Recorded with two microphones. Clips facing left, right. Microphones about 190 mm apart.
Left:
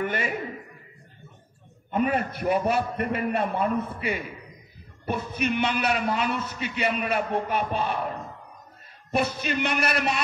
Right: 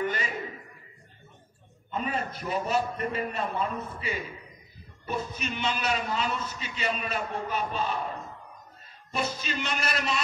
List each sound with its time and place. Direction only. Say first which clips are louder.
0.0 s a man's voice: left 3 dB; 60° left (ahead or behind)
1.9 s a man's voice: left 7 dB; 60° left (ahead or behind)
9.1 s a man's voice: left 6 dB; 60° left (ahead or behind)